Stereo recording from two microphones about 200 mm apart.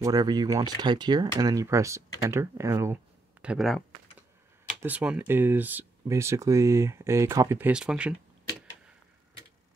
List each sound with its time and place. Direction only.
0.0 s speech: 20° right (ahead or behind)
3.4 s speech: centre (ahead or behind)
4.8 s speech: 5° right (ahead or behind)